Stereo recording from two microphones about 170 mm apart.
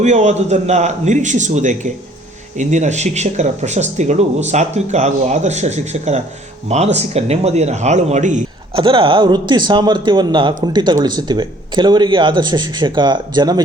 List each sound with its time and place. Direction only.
0.0 s speech: 40° right (ahead or behind)
8.7 s speech: 30° right (ahead or behind)